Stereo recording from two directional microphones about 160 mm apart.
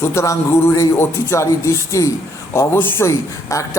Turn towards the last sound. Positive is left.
turn(degrees=20)  # may be behind; listen again after turning